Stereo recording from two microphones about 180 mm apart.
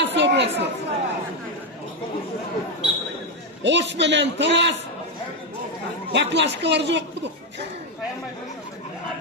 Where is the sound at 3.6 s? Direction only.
80° right.